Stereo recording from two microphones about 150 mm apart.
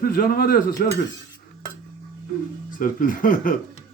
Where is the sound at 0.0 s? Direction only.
85° left.